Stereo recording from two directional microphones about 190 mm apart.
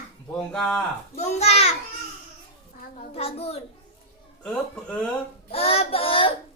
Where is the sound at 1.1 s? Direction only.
35° left (ahead or behind).